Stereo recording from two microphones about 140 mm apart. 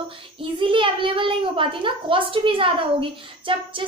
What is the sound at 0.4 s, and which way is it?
A child's voice, 40° right (ahead or behind).